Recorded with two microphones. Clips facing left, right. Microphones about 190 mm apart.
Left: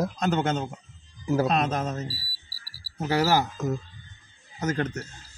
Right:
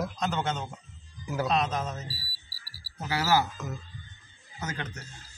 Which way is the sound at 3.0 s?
40° left (ahead or behind).